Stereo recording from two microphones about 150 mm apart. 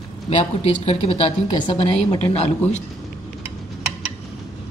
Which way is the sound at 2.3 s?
50° left (ahead or behind).